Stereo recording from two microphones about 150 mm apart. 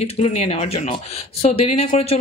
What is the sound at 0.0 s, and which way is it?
A woman's voice, 45° left (ahead or behind).